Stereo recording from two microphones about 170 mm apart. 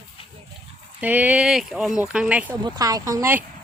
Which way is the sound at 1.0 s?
10° right (ahead or behind).